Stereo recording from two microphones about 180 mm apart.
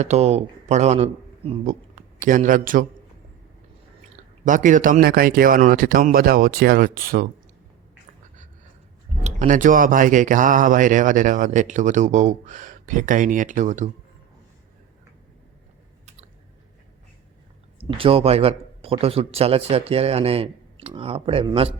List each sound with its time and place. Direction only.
0.0 s speech: 35° right (ahead or behind)
2.1 s speech: 45° right (ahead or behind)
4.4 s speech: 45° right (ahead or behind)
9.2 s speech: 40° right (ahead or behind)
17.8 s speech: 30° right (ahead or behind)